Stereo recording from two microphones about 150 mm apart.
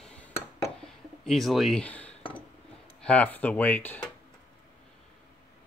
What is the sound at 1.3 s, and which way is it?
Speech, centre (ahead or behind).